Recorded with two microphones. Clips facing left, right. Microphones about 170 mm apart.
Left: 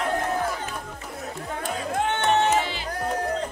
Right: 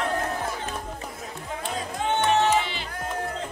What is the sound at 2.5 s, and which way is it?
Music, 45° left (ahead or behind).